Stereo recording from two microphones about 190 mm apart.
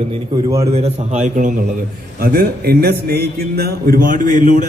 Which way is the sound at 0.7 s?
35° right (ahead or behind).